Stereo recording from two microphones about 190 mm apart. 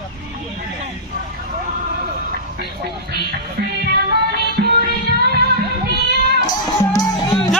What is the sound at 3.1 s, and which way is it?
Music, 55° right (ahead or behind).